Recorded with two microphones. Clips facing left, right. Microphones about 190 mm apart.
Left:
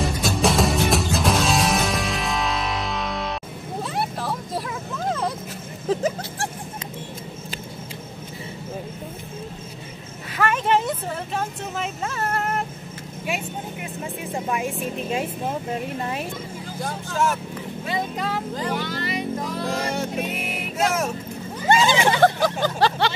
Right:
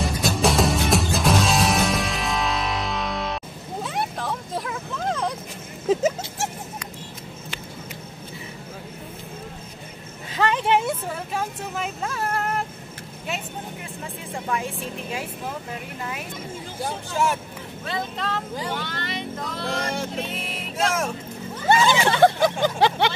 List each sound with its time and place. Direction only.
0.0 s music: centre (ahead or behind)
3.8 s vehicle: 5° left (ahead or behind)
10.3 s a sound: 20° right (ahead or behind); by 12.6 s centre (ahead or behind)
14.3 s vehicle: 20° left (ahead or behind)
16.0 s speech: 30° left (ahead or behind)
16.8 s speech: 5° right (ahead or behind)
17.8 s vehicle: 10° left (ahead or behind)
21.8 s vehicle: 15° left (ahead or behind)
22.2 s vehicle: 15° right (ahead or behind)